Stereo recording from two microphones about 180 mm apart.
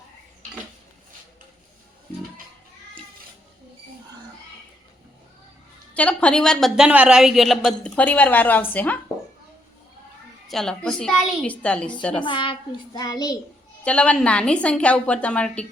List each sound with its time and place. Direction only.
5.9 s a woman's voice: 5° left (ahead or behind)
10.5 s a woman's voice: 5° left (ahead or behind)
12.2 s a child's voice: 25° left (ahead or behind)
13.8 s a woman's voice: 5° left (ahead or behind)